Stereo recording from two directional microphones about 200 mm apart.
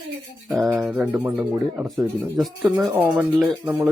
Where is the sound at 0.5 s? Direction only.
Centre (ahead or behind).